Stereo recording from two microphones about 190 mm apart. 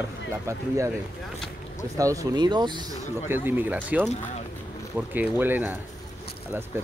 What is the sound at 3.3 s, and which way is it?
Speech, 10° right (ahead or behind).